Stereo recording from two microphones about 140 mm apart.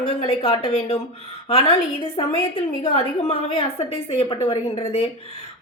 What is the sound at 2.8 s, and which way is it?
A woman's voice, 45° left (ahead or behind).